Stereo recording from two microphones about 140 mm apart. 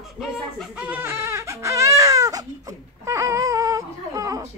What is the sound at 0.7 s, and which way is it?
Baby cry, 10° right (ahead or behind).